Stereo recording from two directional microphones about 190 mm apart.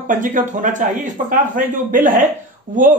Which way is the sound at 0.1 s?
45° right (ahead or behind).